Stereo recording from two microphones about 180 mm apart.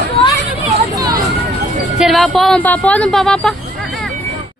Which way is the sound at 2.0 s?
Centre (ahead or behind).